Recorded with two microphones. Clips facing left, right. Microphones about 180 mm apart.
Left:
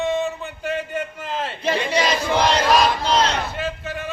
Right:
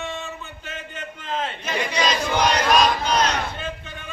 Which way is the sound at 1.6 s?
30° left (ahead or behind).